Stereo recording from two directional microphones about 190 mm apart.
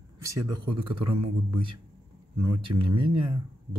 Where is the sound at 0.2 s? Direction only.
20° right (ahead or behind).